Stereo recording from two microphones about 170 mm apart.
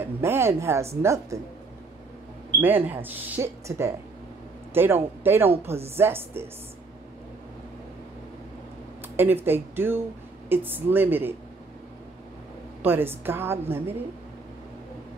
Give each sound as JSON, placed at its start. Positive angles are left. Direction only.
{"t": 0.0, "sound": "a woman's voice", "side_deg": -15}
{"t": 2.6, "sound": "a woman's voice", "side_deg": -10}
{"t": 9.1, "sound": "a woman's voice", "side_deg": -10}
{"t": 12.8, "sound": "a woman's voice", "side_deg": -10}